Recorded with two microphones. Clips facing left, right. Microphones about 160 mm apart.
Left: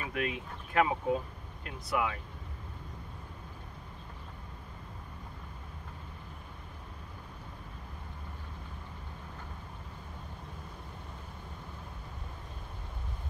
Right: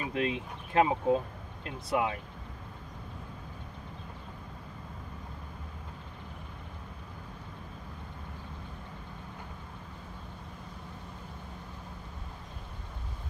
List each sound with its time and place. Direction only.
0.0 s speech: 25° right (ahead or behind)